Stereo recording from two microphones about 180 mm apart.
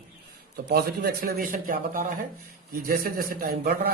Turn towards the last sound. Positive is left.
turn(degrees=-55)  # may be behind; listen again after turning